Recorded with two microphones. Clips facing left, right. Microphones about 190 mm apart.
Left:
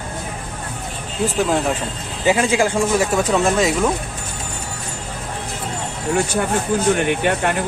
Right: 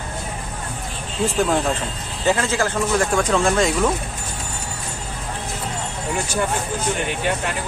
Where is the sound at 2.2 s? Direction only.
15° left (ahead or behind).